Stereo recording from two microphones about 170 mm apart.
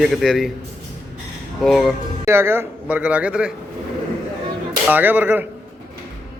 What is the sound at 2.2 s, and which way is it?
A man's voice, 15° right (ahead or behind).